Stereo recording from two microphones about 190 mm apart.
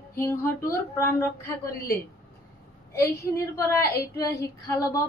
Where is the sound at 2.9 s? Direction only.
15° left (ahead or behind).